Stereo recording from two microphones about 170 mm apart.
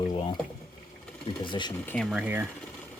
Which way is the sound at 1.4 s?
25° left (ahead or behind).